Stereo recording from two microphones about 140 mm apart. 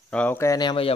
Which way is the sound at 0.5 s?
35° left (ahead or behind).